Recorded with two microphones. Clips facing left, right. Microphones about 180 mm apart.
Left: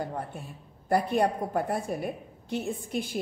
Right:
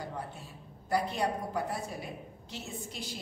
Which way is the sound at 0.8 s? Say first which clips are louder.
Left 6 dB; 55° left (ahead or behind).